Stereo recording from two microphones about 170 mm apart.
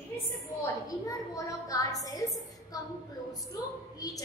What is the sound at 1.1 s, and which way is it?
A woman's voice, 20° left (ahead or behind).